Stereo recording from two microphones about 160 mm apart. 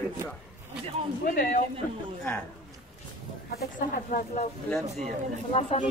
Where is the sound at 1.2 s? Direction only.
65° left (ahead or behind).